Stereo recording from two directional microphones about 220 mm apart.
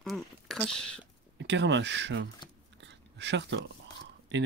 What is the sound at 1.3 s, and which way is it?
Speech, 55° right (ahead or behind).